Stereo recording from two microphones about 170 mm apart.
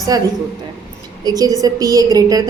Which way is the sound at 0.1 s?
20° right (ahead or behind).